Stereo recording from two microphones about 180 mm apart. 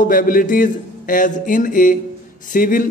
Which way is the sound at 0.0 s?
50° left (ahead or behind).